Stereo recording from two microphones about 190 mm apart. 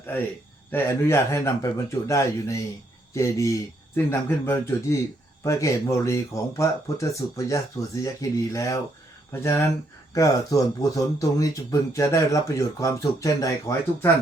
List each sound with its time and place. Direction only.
0.7 s speech: 10° left (ahead or behind)